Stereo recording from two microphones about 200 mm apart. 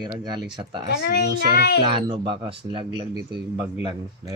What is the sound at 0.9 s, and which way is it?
Speech, 55° left (ahead or behind).